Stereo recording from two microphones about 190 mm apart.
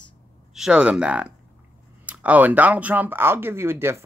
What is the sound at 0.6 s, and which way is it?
Speech, 5° right (ahead or behind).